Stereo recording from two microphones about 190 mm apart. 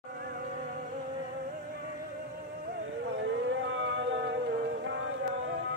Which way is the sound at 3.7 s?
80° right.